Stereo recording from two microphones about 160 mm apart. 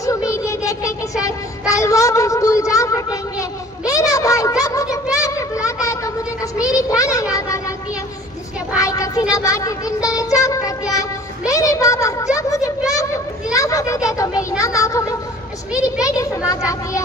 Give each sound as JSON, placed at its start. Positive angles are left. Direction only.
{"t": 0.0, "sound": "child singing", "side_deg": 20}
{"t": 8.7, "sound": "child singing", "side_deg": 20}